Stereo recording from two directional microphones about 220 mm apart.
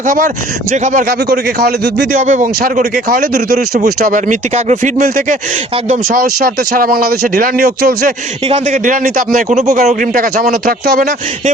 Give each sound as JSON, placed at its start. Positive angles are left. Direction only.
{"t": 0.0, "sound": "a man's voice", "side_deg": -40}
{"t": 2.2, "sound": "speech", "side_deg": -35}
{"t": 8.4, "sound": "speech", "side_deg": -30}